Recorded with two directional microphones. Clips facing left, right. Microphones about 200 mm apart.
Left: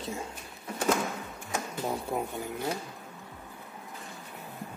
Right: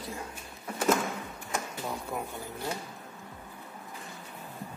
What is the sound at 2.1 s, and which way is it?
Speech, 30° left (ahead or behind).